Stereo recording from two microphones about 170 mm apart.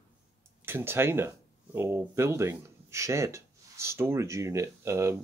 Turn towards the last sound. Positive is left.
turn(degrees=-15)  # may be behind; listen again after turning